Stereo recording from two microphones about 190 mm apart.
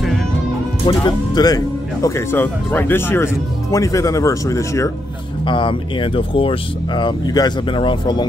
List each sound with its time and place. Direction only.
0.8 s speech: 25° left (ahead or behind)